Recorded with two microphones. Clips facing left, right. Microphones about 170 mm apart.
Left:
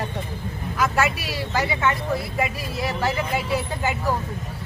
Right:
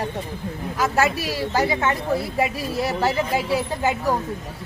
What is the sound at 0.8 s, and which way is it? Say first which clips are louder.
Speech: right 2 dB; 40° right (ahead or behind).